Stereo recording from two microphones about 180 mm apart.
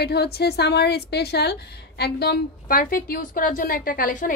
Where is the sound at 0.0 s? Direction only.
65° left (ahead or behind).